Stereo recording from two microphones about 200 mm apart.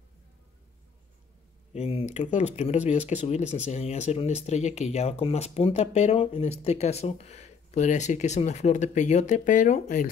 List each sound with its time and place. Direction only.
1.7 s speech: 30° left (ahead or behind)